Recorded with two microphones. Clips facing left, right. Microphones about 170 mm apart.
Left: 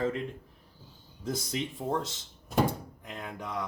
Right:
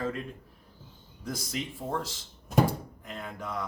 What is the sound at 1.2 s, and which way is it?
Speech, 20° left (ahead or behind).